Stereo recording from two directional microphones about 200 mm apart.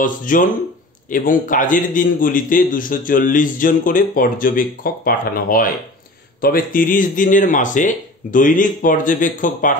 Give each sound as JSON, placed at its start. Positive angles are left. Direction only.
{"t": 0.0, "sound": "a man's voice", "side_deg": 40}